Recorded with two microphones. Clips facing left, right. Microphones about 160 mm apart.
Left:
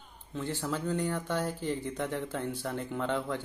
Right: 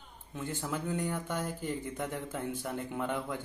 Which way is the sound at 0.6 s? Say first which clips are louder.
Left 2 dB; 15° right (ahead or behind).